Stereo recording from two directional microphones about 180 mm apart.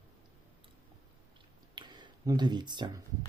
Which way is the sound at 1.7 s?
25° right (ahead or behind).